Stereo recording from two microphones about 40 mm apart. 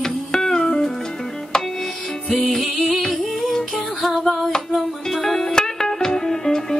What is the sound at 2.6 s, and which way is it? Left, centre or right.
Music, centre.